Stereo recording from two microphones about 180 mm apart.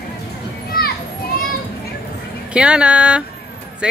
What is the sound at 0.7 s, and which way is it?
Children playing, 60° left (ahead or behind).